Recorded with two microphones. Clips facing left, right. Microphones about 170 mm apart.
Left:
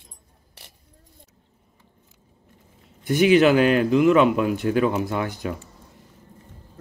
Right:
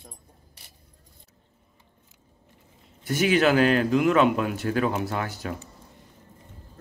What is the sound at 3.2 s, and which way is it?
Speech, 45° right (ahead or behind).